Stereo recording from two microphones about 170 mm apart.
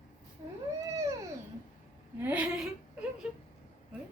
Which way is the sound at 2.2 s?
10° right (ahead or behind).